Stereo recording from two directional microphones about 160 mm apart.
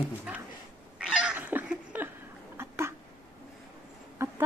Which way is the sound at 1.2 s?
10° right (ahead or behind).